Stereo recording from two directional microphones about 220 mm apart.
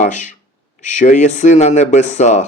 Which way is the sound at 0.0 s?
35° left (ahead or behind).